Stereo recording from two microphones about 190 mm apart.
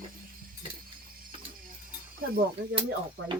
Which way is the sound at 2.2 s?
50° right (ahead or behind).